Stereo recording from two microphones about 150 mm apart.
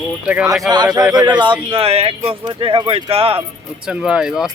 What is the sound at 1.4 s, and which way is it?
Speech, 35° right (ahead or behind).